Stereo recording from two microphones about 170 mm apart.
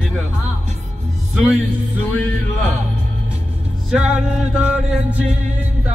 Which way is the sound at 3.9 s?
5° right (ahead or behind).